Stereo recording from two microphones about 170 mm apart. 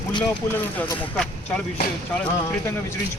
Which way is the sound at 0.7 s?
10° left (ahead or behind).